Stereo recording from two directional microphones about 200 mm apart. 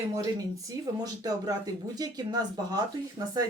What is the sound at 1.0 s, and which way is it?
Speech, 20° right (ahead or behind).